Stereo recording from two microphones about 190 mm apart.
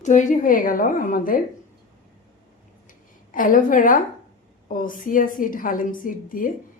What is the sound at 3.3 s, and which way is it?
A woman's voice, 45° left (ahead or behind).